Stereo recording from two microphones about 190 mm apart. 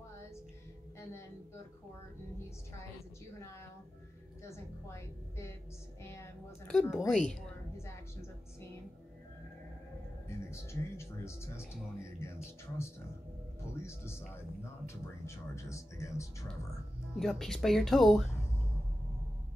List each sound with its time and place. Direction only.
4.4 s a woman's voice: 15° left (ahead or behind)
7.1 s music: 5° left (ahead or behind)
10.2 s speech: 15° left (ahead or behind)
17.1 s speech: centre (ahead or behind)